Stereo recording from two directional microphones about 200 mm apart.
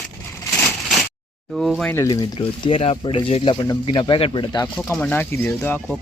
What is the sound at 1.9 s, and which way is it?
Speech, 15° left (ahead or behind).